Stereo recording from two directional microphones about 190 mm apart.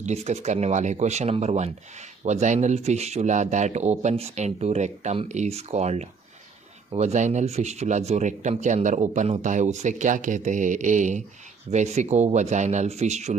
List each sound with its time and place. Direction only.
0.0 s speech: 35° right (ahead or behind)